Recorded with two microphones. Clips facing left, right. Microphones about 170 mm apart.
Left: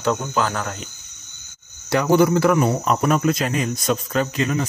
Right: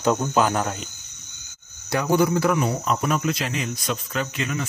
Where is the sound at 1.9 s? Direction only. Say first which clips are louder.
Left 4 dB; 70° left (ahead or behind).